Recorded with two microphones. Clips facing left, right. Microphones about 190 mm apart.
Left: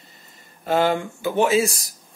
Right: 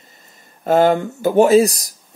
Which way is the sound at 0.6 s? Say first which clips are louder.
Right 6 dB; 40° right (ahead or behind).